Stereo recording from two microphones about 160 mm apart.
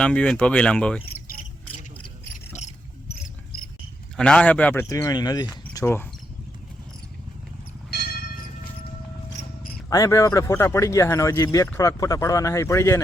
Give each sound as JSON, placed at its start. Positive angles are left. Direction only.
{"t": 0.0, "sound": "speech", "side_deg": 5}
{"t": 4.2, "sound": "speech", "side_deg": 5}
{"t": 5.7, "sound": "speech", "side_deg": 15}
{"t": 7.9, "sound": "church bell", "side_deg": 85}
{"t": 9.9, "sound": "speech", "side_deg": 20}